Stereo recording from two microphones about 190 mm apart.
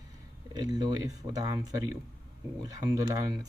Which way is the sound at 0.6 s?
20° right (ahead or behind).